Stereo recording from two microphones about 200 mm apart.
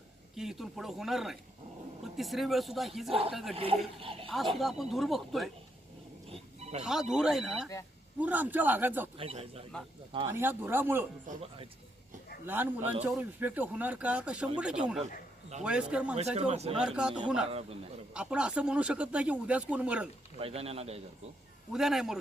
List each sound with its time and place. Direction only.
0.3 s speech: centre (ahead or behind)
3.1 s a man's voice: 30° right (ahead or behind)
4.5 s speech: centre (ahead or behind)
6.3 s roaring cats: 30° right (ahead or behind)
6.8 s a man's voice: centre (ahead or behind)
9.1 s a man's voice: 30° right (ahead or behind)
10.2 s a man's voice: 10° right (ahead or behind)
12.5 s a man's voice: 10° right (ahead or behind)
16.1 s speech: 35° right (ahead or behind)
16.7 s speech: 5° right (ahead or behind)
17.5 s a man's voice: 30° right (ahead or behind)
18.1 s speech: 5° right (ahead or behind)
20.4 s a man's voice: 30° right (ahead or behind)
21.7 s speech: centre (ahead or behind)